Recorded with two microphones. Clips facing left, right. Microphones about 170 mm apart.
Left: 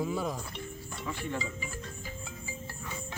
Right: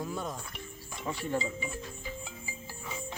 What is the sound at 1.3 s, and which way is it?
Speech, 25° right (ahead or behind).